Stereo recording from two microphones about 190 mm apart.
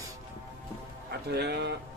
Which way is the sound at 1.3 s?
60° right (ahead or behind).